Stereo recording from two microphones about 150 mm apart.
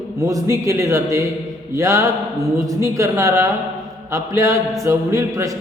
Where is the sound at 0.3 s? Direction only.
20° right (ahead or behind).